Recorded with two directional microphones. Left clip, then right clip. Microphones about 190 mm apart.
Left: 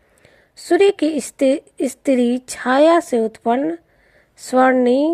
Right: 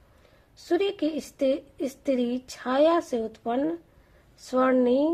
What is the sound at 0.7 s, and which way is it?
A woman's voice, 35° left (ahead or behind).